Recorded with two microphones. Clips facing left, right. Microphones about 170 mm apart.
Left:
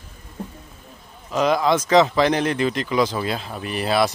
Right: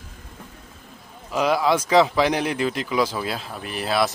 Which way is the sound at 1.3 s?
10° right (ahead or behind).